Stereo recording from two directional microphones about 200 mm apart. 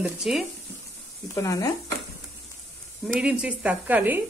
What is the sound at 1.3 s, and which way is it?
Stir, 15° left (ahead or behind).